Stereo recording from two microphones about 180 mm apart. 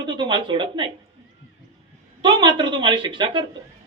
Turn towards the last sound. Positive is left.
turn(degrees=-25)  # may be behind; listen again after turning